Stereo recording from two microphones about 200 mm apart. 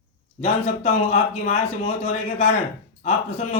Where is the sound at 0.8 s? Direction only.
35° left (ahead or behind).